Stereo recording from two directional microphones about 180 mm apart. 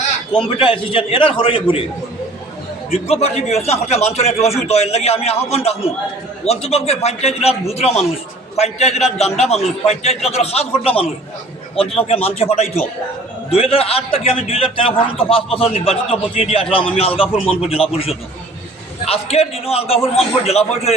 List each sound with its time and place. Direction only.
0.3 s a man's voice: 30° left (ahead or behind)
2.9 s a man's voice: 35° left (ahead or behind)
17.3 s speech: 5° left (ahead or behind)
17.6 s a man's voice: 30° left (ahead or behind)